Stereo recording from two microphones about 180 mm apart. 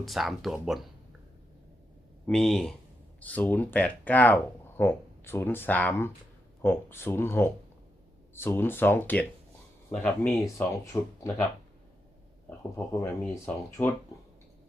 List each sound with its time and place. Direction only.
0.0 s speech: centre (ahead or behind)
2.2 s speech: 5° left (ahead or behind)
10.9 s speech: 15° left (ahead or behind)
12.5 s speech: 15° left (ahead or behind)